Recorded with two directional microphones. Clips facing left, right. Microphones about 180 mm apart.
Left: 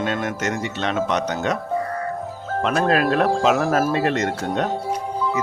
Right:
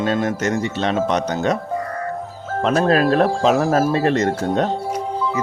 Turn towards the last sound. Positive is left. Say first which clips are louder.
# right 4 dB
turn(degrees=-35)  # may be behind; listen again after turning